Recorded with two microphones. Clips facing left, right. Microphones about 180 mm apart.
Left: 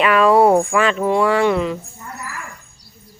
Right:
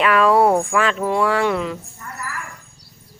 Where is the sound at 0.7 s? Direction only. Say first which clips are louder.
Left 3 dB; centre (ahead or behind).